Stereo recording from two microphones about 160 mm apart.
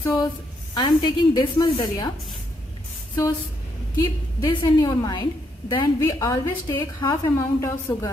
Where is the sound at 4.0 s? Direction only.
25° left (ahead or behind).